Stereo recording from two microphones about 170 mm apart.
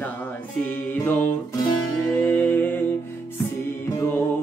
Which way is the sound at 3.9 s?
20° left (ahead or behind).